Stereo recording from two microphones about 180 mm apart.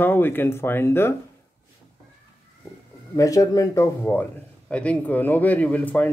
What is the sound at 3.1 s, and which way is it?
Speech, 20° left (ahead or behind).